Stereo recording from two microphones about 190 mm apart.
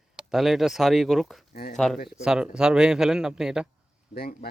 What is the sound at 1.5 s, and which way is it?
Speech, 50° left (ahead or behind).